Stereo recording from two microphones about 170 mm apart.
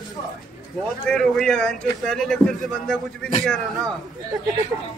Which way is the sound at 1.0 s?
5° left (ahead or behind).